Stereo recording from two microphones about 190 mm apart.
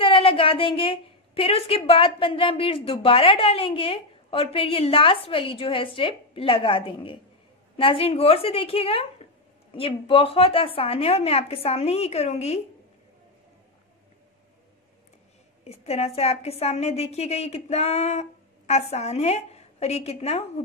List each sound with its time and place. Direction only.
0.0 s a woman's voice: 30° left (ahead or behind)
15.6 s speech: 35° left (ahead or behind)